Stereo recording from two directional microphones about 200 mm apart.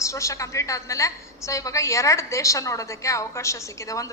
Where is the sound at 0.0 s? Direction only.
15° left (ahead or behind).